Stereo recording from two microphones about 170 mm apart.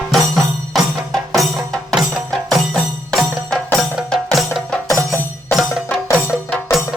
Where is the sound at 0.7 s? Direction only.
Centre (ahead or behind).